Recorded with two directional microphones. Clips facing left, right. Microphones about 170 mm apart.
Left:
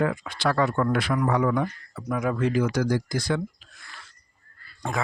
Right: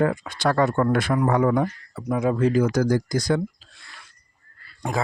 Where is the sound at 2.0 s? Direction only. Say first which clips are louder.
Right 4 dB; 25° right (ahead or behind); by 3.4 s 40° right (ahead or behind).